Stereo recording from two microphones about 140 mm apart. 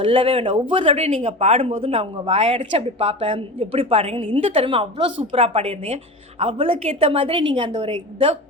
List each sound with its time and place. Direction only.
0.0 s a woman's voice: 40° right (ahead or behind)
7.7 s a woman's voice: 50° right (ahead or behind)